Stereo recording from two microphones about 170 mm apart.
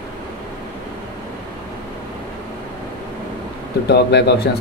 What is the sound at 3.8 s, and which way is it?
Speech, 80° left.